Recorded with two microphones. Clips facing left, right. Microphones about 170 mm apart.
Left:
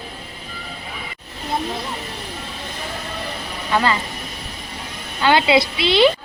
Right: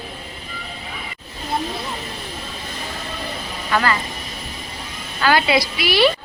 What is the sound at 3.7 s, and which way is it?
Speech, 20° left (ahead or behind).